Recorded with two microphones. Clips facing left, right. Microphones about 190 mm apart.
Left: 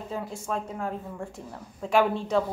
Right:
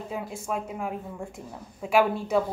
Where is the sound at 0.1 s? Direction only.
10° right (ahead or behind).